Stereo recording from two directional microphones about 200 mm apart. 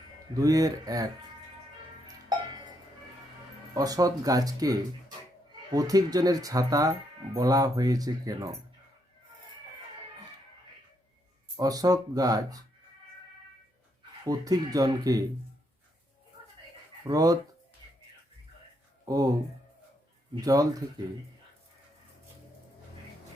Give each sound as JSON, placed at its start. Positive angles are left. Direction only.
{"t": 0.3, "sound": "speech", "side_deg": -15}
{"t": 3.8, "sound": "speech", "side_deg": -20}
{"t": 11.6, "sound": "speech", "side_deg": -20}
{"t": 14.3, "sound": "speech", "side_deg": -20}
{"t": 17.0, "sound": "speech", "side_deg": -20}
{"t": 19.0, "sound": "speech", "side_deg": -20}
{"t": 20.3, "sound": "speech", "side_deg": -20}